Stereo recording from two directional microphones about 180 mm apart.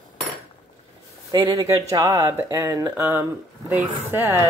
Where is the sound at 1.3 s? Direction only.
25° right (ahead or behind).